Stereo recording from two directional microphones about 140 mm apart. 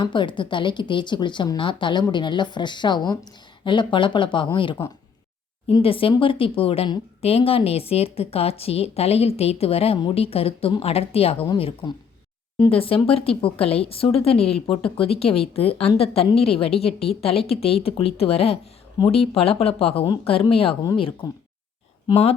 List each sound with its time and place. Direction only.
0.0 s a woman's voice: 35° left (ahead or behind)